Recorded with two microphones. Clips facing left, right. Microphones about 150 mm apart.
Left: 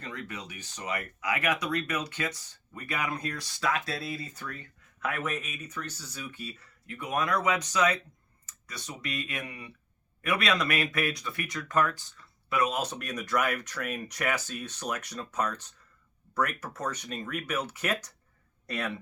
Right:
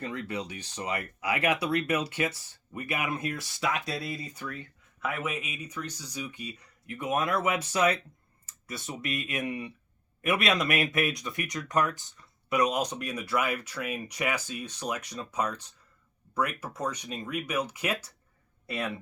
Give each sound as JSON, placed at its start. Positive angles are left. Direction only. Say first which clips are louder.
{"t": 0.0, "sound": "speech", "louder": "right 6 dB", "side_deg": -25}
{"t": 3.8, "sound": "speech", "louder": "right 1 dB", "side_deg": 0}
{"t": 4.2, "sound": "speech", "louder": "right 2 dB", "side_deg": -10}